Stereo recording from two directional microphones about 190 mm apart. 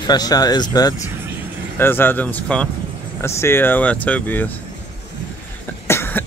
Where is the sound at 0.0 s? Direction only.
20° left (ahead or behind).